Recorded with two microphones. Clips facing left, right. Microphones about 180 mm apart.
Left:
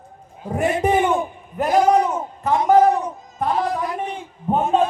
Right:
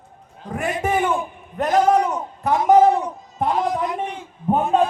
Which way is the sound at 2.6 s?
20° right (ahead or behind).